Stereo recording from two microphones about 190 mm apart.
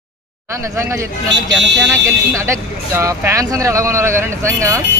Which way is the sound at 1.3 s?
70° right (ahead or behind).